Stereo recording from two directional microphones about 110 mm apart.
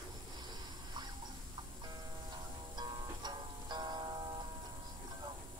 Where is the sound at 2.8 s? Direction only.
40° right (ahead or behind).